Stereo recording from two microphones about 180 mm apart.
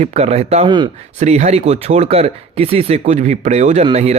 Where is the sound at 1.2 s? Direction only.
40° right (ahead or behind).